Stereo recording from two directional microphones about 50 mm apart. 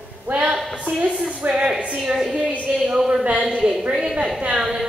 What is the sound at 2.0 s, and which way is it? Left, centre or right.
A woman's voice, centre.